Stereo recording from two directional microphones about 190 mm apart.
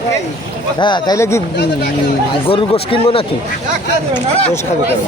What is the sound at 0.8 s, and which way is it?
Speech, 25° left (ahead or behind).